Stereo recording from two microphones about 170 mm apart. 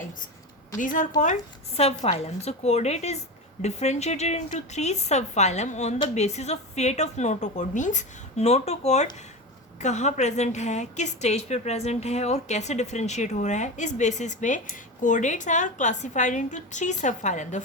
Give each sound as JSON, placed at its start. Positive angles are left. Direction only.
{"t": 0.8, "sound": "a woman's voice", "side_deg": 50}